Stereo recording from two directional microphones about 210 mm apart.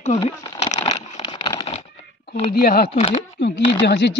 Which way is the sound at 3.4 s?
55° left (ahead or behind).